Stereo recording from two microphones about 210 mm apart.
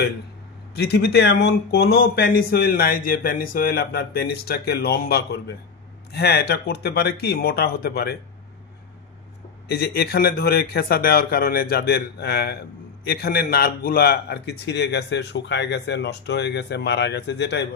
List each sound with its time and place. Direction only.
0.7 s speech: 50° left (ahead or behind)
9.7 s speech: 50° left (ahead or behind)